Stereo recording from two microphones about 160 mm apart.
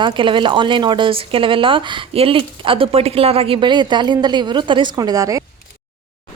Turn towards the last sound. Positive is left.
turn(degrees=-20)  # may be behind; listen again after turning